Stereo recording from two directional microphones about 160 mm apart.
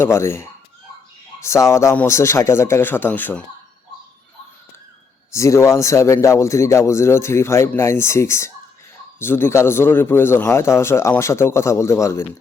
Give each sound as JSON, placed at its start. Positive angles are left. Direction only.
{"t": 0.0, "sound": "speech", "side_deg": 15}
{"t": 5.3, "sound": "speech", "side_deg": 20}